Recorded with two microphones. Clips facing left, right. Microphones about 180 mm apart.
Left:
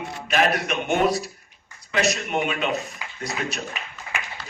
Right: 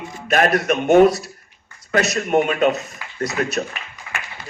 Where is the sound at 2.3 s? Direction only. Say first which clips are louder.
Right 8 dB; 45° right (ahead or behind).